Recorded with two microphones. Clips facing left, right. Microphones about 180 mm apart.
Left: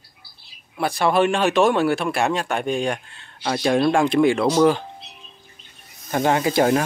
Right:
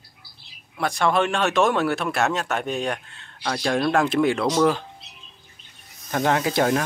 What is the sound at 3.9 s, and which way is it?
Speech, centre (ahead or behind).